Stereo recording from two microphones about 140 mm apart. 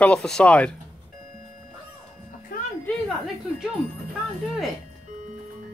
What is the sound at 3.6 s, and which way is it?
Speech, centre (ahead or behind).